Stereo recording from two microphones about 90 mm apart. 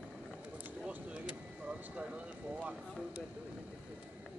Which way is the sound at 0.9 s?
15° right (ahead or behind).